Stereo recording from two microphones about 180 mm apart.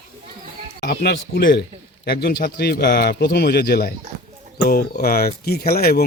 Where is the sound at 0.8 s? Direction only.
65° left (ahead or behind).